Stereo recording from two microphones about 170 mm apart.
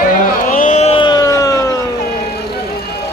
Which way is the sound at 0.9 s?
25° left (ahead or behind).